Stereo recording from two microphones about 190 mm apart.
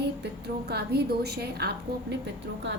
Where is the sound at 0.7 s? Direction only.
55° right (ahead or behind).